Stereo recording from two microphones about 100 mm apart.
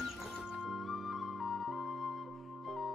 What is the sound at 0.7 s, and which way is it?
Flute, centre (ahead or behind).